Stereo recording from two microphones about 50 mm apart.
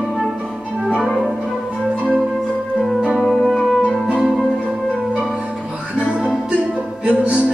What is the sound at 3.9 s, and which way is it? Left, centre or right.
Music, centre.